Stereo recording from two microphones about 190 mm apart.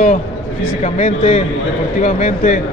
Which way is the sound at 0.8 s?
35° left (ahead or behind).